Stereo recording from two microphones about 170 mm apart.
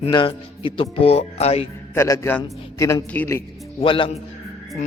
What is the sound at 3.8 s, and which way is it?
Speech, 30° left (ahead or behind).